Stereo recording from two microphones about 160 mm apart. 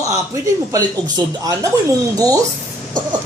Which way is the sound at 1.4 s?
20° right (ahead or behind).